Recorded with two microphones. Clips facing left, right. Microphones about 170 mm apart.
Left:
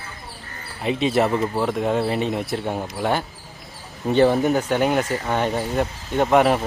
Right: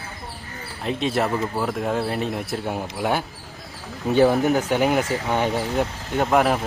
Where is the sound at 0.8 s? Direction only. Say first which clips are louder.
Left 3 dB; centre (ahead or behind).